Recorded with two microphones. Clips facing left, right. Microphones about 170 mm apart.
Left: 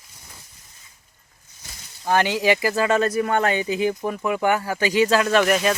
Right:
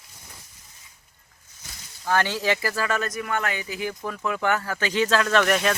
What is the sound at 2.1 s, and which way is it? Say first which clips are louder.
Speech: left 4 dB; 15° left (ahead or behind).